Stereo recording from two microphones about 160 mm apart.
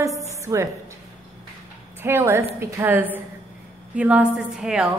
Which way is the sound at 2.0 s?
15° right (ahead or behind).